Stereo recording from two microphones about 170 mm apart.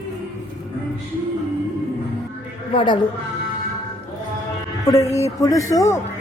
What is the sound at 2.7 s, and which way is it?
Speech, 30° left (ahead or behind).